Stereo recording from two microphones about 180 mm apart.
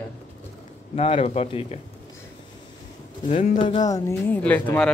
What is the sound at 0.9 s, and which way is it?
Speech, 35° left (ahead or behind).